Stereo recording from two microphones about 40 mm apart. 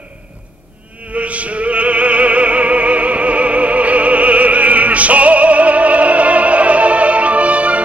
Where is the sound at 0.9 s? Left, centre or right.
Right.